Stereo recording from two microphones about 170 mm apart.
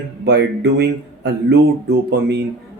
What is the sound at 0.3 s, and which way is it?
Speech, 90° right.